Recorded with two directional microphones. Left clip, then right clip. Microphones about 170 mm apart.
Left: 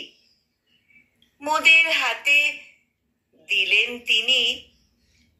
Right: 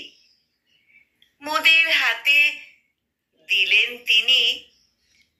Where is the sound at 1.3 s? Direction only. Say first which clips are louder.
Left 1 dB; 10° left (ahead or behind).